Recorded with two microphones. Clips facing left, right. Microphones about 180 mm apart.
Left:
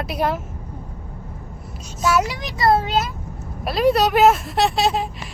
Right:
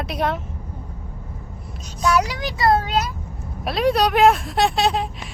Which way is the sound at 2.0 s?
Centre (ahead or behind).